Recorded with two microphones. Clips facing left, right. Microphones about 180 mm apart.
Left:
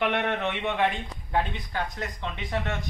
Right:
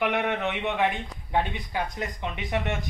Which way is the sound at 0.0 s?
5° right (ahead or behind).